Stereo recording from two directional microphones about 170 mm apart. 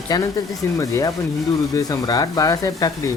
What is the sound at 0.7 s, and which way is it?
Speech, 20° left (ahead or behind).